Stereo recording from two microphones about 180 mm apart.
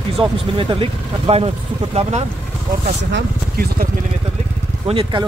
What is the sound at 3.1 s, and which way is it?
Speech, 60° right (ahead or behind).